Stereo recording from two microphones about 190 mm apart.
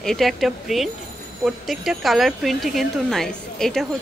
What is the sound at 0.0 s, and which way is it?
A woman's voice, centre (ahead or behind).